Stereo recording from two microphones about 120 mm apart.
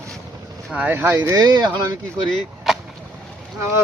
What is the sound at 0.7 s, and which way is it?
Speech, 15° right (ahead or behind).